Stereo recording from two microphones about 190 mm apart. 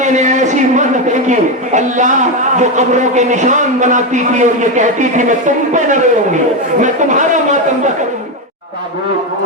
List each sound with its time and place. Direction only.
0.0 s a man's voice: 40° right (ahead or behind)